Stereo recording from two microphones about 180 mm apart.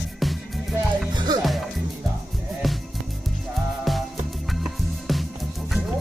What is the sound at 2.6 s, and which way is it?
Music, centre (ahead or behind).